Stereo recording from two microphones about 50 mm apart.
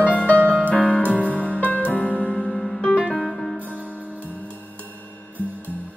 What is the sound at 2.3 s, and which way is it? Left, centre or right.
Music, centre.